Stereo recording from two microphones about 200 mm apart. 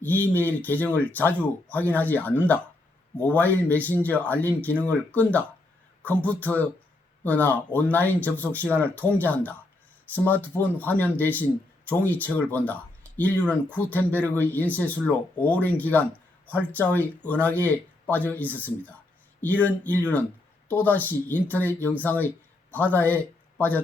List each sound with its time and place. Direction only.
0.0 s speech: 10° left (ahead or behind)